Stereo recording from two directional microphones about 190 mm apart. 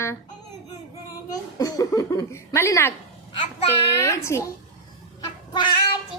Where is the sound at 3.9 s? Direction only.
15° left (ahead or behind).